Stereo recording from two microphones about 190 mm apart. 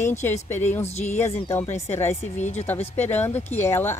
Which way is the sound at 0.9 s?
35° left (ahead or behind).